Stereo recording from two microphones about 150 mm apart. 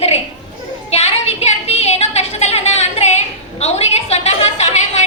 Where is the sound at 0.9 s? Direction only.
45° left (ahead or behind).